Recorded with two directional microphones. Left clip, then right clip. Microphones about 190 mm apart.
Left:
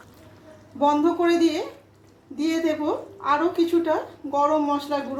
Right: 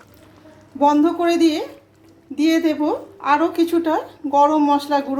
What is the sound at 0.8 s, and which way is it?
A woman's voice, 35° right (ahead or behind).